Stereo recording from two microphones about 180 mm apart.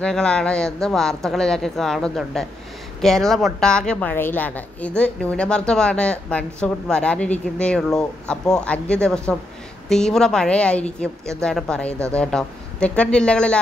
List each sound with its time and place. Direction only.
0.0 s a woman's voice: 5° left (ahead or behind)